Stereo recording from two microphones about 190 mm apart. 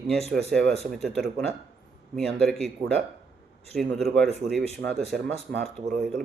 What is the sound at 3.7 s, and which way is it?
A man's voice, centre (ahead or behind).